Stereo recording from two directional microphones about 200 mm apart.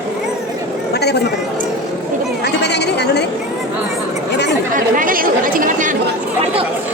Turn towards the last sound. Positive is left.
turn(degrees=-40)  # may be behind; listen again after turning